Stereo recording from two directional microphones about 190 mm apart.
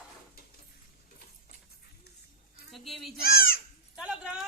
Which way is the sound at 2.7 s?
Centre (ahead or behind).